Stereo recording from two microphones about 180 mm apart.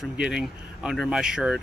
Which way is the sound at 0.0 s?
5° right (ahead or behind).